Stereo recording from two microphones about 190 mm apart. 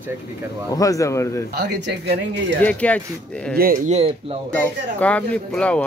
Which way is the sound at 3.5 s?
50° right (ahead or behind).